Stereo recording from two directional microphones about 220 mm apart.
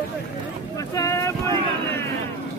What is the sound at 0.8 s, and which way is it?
Boat, 15° left (ahead or behind).